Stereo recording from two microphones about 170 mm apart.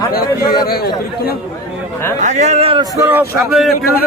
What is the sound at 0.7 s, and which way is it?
Speech, 65° left (ahead or behind).